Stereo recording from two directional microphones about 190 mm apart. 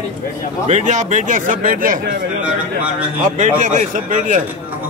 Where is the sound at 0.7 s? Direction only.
40° right (ahead or behind).